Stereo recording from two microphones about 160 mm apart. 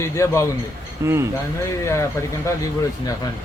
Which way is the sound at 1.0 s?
15° right (ahead or behind).